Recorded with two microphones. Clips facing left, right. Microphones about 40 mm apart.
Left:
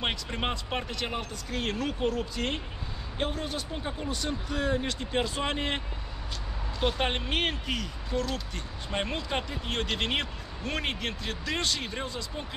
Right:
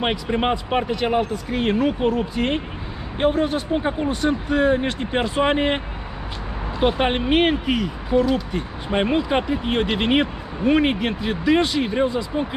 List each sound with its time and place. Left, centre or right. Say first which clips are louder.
0.0 s speech: right 10 dB; centre
6.8 s speech: right 9 dB; right